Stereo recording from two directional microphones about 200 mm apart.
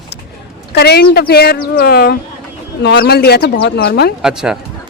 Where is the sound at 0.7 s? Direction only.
55° left (ahead or behind).